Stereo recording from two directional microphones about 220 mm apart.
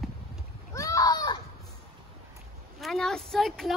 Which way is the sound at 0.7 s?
15° left (ahead or behind).